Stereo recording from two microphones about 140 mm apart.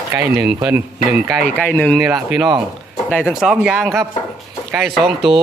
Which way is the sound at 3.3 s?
5° right (ahead or behind).